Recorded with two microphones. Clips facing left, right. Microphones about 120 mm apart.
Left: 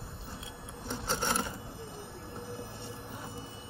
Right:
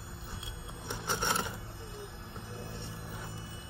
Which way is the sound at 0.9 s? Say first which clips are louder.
Left 1 dB; 15° right (ahead or behind).